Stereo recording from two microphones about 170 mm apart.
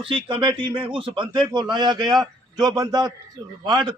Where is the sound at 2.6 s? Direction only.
25° right (ahead or behind).